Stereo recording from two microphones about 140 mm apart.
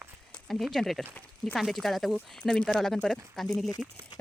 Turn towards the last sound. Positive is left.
turn(degrees=0)  # may be behind; listen again after turning